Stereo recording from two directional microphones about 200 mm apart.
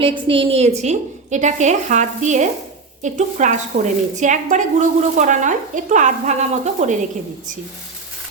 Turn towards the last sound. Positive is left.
turn(degrees=-40)  # may be behind; listen again after turning